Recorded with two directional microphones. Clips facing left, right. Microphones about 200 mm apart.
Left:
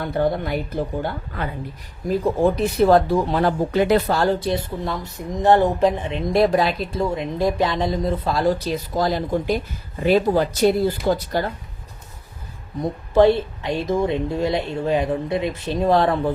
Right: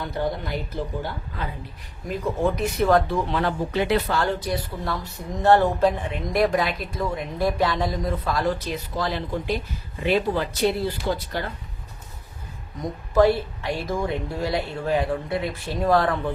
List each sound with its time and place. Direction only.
0.0 s a woman's voice: 55° left (ahead or behind)
2.0 s speech: 35° left (ahead or behind)
12.8 s speech: 25° left (ahead or behind)